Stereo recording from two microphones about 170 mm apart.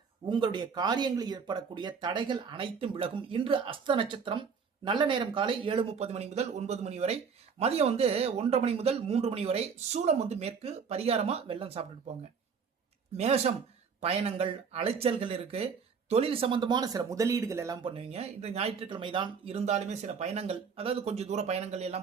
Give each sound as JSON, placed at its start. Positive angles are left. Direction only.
{"t": 0.3, "sound": "speech", "side_deg": -30}
{"t": 13.1, "sound": "speech", "side_deg": -40}
{"t": 17.8, "sound": "speech", "side_deg": -35}